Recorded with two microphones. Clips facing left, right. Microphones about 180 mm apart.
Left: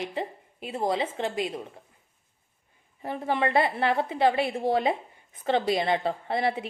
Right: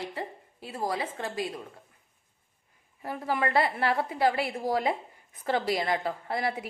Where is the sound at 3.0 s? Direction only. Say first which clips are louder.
Left 3 dB; 25° left (ahead or behind).